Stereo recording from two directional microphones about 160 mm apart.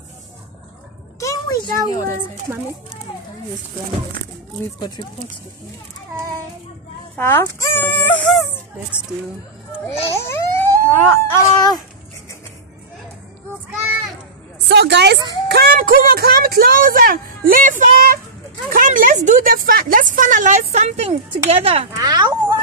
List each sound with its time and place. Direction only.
1.2 s a sound: 20° left (ahead or behind)
2.5 s speech: 10° right (ahead or behind)
4.7 s speech: 30° left (ahead or behind)
7.2 s speech: 15° left (ahead or behind)
10.1 s a sound: 15° left (ahead or behind)
11.1 s speech: 20° left (ahead or behind)
14.7 s speech: 90° right
15.4 s speech: 70° right (ahead or behind); by 21.8 s 40° right (ahead or behind)
21.9 s speech: 25° right (ahead or behind)